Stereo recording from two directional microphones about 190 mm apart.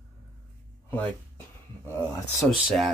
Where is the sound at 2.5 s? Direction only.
5° right (ahead or behind).